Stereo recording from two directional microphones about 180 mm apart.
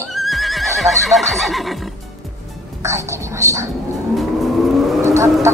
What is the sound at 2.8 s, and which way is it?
Speech, 15° right (ahead or behind).